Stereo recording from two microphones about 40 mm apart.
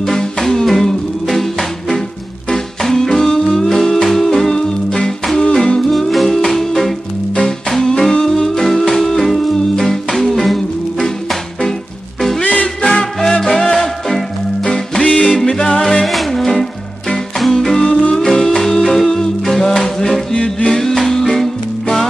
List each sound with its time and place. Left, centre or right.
0.0 s music: centre
5.4 s humming: centre
5.8 s music: centre
12.8 s music: centre
14.6 s music: left